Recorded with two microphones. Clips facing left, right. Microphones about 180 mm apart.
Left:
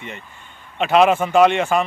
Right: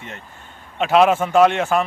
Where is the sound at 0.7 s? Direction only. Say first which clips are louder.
Even; centre (ahead or behind).